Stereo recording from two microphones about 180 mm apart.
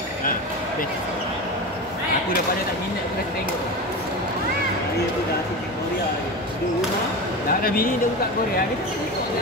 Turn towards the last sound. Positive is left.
turn(degrees=55)  # may be behind; listen again after turning